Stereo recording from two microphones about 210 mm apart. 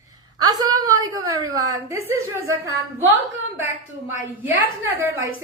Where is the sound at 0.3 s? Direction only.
20° right (ahead or behind).